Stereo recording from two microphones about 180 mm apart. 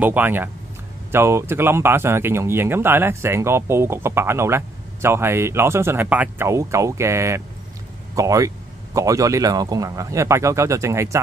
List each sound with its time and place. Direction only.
0.0 s speech: 10° right (ahead or behind)